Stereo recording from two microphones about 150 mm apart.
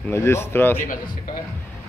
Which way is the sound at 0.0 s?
15° left (ahead or behind).